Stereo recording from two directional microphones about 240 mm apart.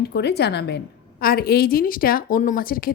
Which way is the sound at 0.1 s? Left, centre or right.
Left.